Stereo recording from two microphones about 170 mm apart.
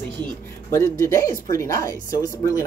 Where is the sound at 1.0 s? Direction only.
20° left (ahead or behind).